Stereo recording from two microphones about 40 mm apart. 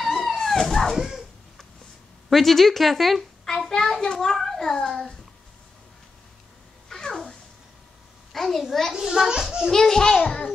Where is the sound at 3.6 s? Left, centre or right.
Centre.